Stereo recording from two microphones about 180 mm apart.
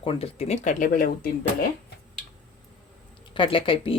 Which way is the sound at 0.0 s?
30° left (ahead or behind).